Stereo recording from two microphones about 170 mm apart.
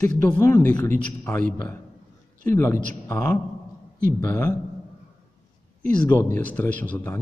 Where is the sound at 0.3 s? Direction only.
15° left (ahead or behind).